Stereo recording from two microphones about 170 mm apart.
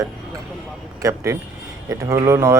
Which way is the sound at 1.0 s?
15° right (ahead or behind).